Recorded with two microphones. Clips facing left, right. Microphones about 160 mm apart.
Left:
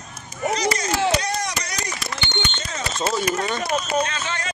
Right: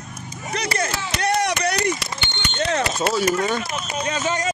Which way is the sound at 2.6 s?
70° right (ahead or behind).